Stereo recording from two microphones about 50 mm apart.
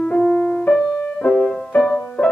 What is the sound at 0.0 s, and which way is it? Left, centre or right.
Music, centre.